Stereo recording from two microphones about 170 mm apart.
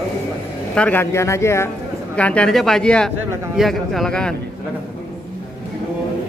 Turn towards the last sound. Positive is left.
turn(degrees=5)  # may be behind; listen again after turning